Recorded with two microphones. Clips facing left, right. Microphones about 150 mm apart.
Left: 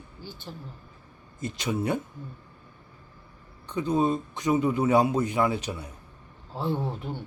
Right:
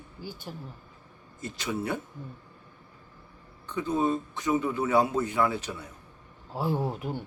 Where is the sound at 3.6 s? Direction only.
15° left (ahead or behind).